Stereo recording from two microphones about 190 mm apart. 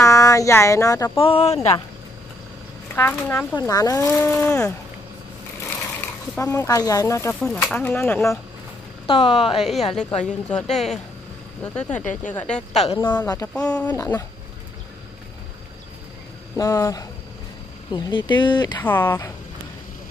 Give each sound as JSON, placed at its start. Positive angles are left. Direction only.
{"t": 0.0, "sound": "speech", "side_deg": 15}
{"t": 1.1, "sound": "speech", "side_deg": 30}
{"t": 3.0, "sound": "speech", "side_deg": 10}
{"t": 5.9, "sound": "speech", "side_deg": 10}
{"t": 9.0, "sound": "speech", "side_deg": 25}
{"t": 9.6, "sound": "speech", "side_deg": 0}
{"t": 12.7, "sound": "speech", "side_deg": 30}
{"t": 13.2, "sound": "speech", "side_deg": 15}
{"t": 16.5, "sound": "speech", "side_deg": 20}
{"t": 18.8, "sound": "speech", "side_deg": 10}